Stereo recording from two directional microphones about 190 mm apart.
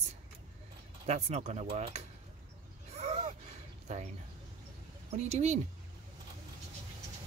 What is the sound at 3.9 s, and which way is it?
Speech, 40° right (ahead or behind).